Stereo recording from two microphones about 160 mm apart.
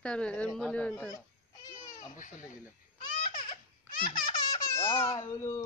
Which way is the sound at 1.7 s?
20° left (ahead or behind).